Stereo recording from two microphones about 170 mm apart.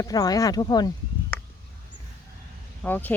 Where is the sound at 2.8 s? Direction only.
10° left (ahead or behind).